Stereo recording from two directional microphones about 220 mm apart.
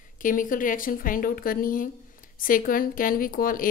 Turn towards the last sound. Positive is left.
turn(degrees=40)  # may be behind; listen again after turning